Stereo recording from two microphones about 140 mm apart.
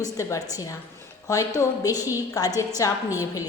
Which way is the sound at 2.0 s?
15° right (ahead or behind).